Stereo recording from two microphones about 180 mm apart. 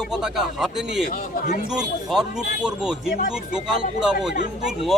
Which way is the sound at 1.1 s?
50° left (ahead or behind).